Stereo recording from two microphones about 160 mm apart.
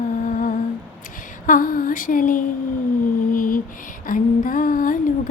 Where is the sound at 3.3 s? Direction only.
60° left (ahead or behind).